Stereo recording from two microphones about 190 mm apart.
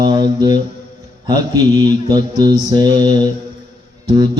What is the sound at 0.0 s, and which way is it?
Mantra, 20° right (ahead or behind).